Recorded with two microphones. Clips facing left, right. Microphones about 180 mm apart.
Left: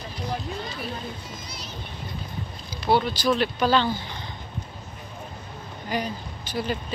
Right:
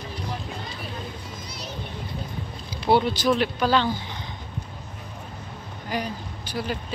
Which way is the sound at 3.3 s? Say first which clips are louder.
Left 2 dB; 10° right (ahead or behind).